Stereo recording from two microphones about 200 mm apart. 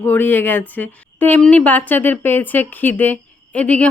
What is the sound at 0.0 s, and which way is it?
A woman's voice, 10° left (ahead or behind).